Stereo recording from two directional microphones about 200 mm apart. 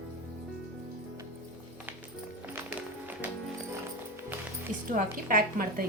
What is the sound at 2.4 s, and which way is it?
Music, 10° right (ahead or behind).